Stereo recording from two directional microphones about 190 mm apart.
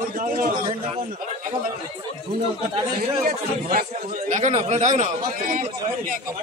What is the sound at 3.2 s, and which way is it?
Speech, 45° right (ahead or behind).